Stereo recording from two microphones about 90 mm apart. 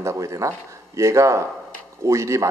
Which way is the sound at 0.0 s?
35° right (ahead or behind).